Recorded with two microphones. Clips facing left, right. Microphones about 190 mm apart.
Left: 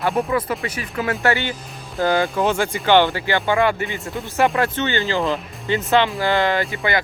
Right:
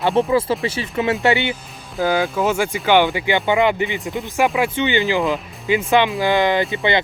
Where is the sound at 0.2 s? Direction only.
25° right (ahead or behind).